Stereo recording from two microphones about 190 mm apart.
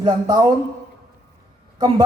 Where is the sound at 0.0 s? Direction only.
20° right (ahead or behind).